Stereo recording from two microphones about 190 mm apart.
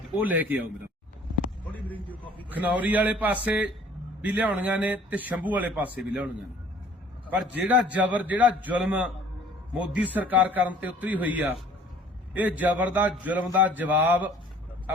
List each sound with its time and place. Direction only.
0.3 s a man's voice: 10° right (ahead or behind)
1.7 s speech: 10° left (ahead or behind)
2.5 s a man's voice: 10° right (ahead or behind)